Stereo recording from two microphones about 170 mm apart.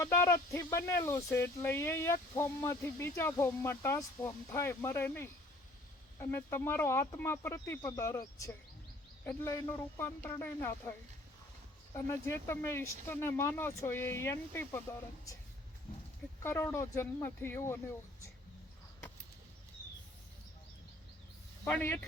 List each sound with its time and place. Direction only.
0.0 s speech: 15° left (ahead or behind)
11.9 s speech: 15° left (ahead or behind)
16.4 s speech: 15° left (ahead or behind)
21.6 s speech: 15° left (ahead or behind)